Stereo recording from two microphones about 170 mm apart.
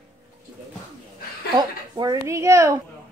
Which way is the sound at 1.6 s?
25° right (ahead or behind).